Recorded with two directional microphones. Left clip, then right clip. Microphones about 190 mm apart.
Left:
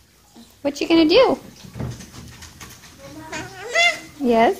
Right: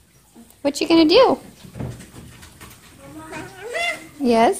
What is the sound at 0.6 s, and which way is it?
Speech, 15° right (ahead or behind).